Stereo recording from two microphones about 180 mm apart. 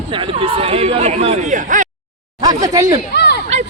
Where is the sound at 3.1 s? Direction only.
70° left (ahead or behind).